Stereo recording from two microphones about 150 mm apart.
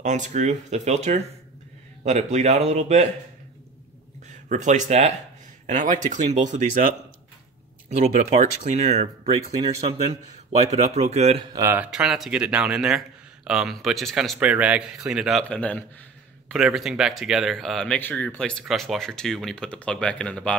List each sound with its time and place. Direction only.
0.0 s speech: 55° right (ahead or behind)
4.3 s speech: 55° right (ahead or behind)
7.9 s speech: 50° right (ahead or behind)
11.5 s speech: 20° right (ahead or behind)
11.8 s a man's voice: 5° right (ahead or behind)
15.4 s a man's voice: 10° left (ahead or behind)
16.4 s a man's voice: centre (ahead or behind)